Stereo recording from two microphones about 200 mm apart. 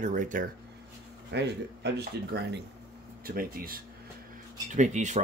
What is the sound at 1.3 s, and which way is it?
Speech, 60° right (ahead or behind).